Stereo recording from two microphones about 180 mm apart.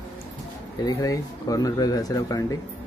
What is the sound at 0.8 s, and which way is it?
Speech, 20° left (ahead or behind).